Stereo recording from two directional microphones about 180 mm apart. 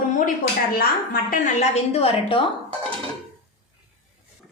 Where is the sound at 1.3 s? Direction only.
40° left (ahead or behind).